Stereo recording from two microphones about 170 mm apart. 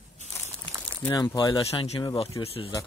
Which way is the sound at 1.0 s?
15° left (ahead or behind).